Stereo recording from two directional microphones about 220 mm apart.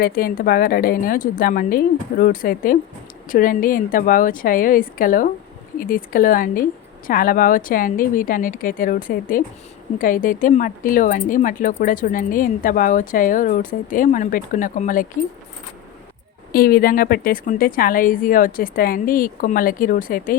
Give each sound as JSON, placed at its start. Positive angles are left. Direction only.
{"t": 0.0, "sound": "speech", "side_deg": 40}
{"t": 16.5, "sound": "speech", "side_deg": 40}